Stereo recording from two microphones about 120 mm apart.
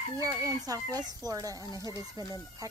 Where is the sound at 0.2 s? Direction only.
30° right (ahead or behind).